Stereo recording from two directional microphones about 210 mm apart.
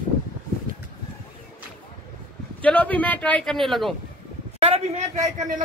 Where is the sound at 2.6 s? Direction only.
5° left (ahead or behind).